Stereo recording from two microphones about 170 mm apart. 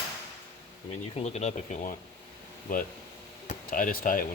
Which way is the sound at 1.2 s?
40° left (ahead or behind).